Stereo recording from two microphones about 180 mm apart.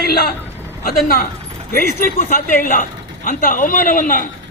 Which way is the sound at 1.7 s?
50° left (ahead or behind).